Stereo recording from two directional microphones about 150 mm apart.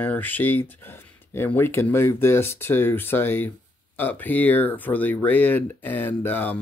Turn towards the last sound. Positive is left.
turn(degrees=10)  # may be behind; listen again after turning